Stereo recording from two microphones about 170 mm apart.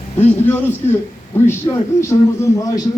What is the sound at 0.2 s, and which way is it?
A man's voice, 10° left (ahead or behind).